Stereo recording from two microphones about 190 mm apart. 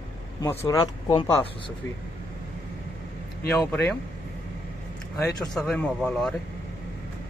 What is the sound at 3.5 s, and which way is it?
Speech, 5° left (ahead or behind).